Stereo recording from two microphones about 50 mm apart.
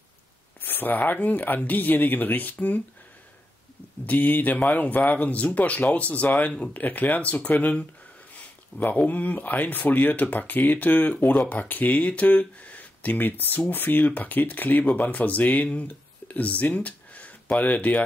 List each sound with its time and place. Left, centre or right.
0.6 s speech: left
4.0 s speech: left